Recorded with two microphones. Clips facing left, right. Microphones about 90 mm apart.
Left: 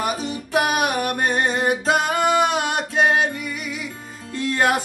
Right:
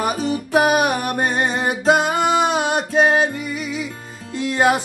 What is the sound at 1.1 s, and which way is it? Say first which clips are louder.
Music: right 1 dB; 30° right (ahead or behind).